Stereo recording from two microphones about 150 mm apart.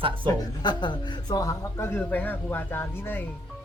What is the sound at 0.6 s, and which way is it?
Speech, 30° left (ahead or behind).